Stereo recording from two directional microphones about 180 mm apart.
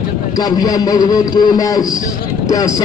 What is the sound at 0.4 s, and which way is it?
A man's voice, 20° left (ahead or behind).